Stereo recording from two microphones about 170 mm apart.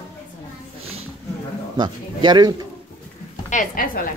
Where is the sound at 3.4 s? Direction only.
50° left (ahead or behind).